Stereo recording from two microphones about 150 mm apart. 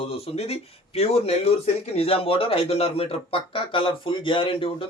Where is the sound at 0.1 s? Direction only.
40° left (ahead or behind).